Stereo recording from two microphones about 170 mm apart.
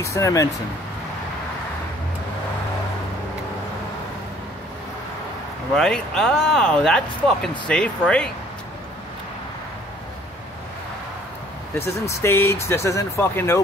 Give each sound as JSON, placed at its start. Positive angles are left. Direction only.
{"t": 0.0, "sound": "speech", "side_deg": 20}
{"t": 5.8, "sound": "speech", "side_deg": 5}
{"t": 11.8, "sound": "speech", "side_deg": 15}